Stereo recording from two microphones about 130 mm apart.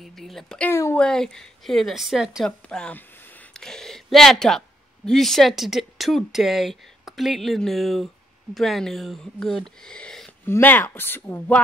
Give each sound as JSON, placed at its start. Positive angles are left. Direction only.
{"t": 0.0, "sound": "speech", "side_deg": 0}
{"t": 0.7, "sound": "speech", "side_deg": 20}
{"t": 0.9, "sound": "a woman's voice", "side_deg": 5}